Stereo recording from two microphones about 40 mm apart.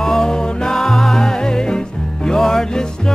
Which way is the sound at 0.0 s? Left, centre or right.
Centre.